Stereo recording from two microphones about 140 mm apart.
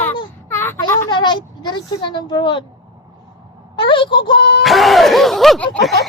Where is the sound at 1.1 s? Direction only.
35° left (ahead or behind).